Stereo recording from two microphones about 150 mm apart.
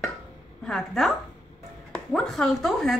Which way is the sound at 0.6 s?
5° left (ahead or behind).